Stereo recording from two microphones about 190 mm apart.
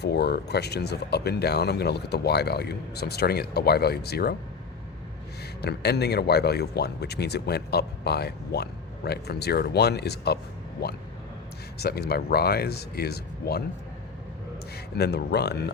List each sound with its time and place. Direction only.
0.0 s speech: 60° left (ahead or behind)
5.6 s speech: 60° left (ahead or behind)
14.9 s speech: 60° left (ahead or behind)